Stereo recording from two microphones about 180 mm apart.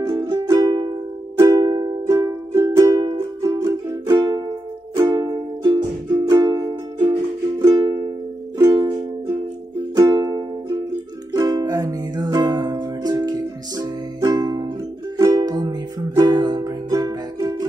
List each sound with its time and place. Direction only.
0.0 s music: 20° right (ahead or behind)
9.9 s music: 20° right (ahead or behind)